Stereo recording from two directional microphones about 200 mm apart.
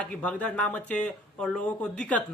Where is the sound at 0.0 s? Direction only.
5° left (ahead or behind).